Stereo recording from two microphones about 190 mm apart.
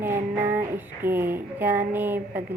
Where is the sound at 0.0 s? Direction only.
10° right (ahead or behind).